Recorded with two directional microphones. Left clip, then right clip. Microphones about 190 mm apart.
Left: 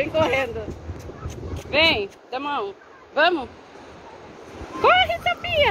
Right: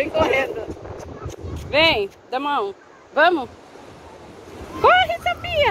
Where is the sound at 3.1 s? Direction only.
15° right (ahead or behind).